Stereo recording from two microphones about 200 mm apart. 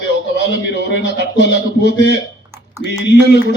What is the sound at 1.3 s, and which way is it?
A man's voice, 60° left (ahead or behind).